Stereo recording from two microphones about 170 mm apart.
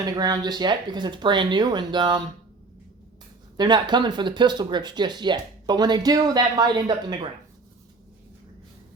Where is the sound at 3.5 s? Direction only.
25° right (ahead or behind).